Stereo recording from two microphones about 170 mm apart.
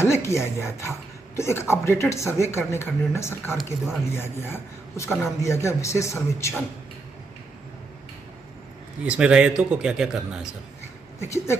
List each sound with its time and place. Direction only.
0.0 s speech: 15° left (ahead or behind)
9.0 s a man's voice: 5° right (ahead or behind)
11.1 s speech: 15° left (ahead or behind)